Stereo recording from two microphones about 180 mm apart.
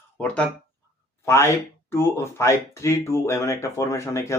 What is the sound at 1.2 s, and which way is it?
Speech, 15° left (ahead or behind).